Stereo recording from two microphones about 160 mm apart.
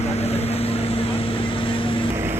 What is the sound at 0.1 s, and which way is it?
Vehicle, 40° left (ahead or behind).